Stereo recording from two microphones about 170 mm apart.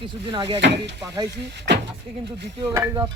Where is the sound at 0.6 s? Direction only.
90° right.